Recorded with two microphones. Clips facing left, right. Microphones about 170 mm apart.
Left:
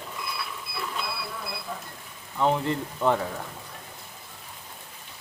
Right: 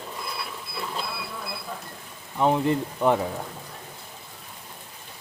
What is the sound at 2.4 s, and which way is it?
Speech, 15° right (ahead or behind).